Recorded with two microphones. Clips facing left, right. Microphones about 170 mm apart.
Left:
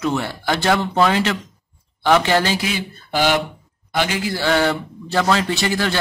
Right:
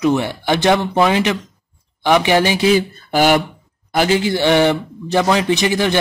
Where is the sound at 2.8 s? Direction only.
50° right (ahead or behind).